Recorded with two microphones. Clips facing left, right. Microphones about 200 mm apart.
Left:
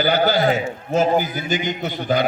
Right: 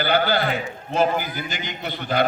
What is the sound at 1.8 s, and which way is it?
Speech, 55° right (ahead or behind).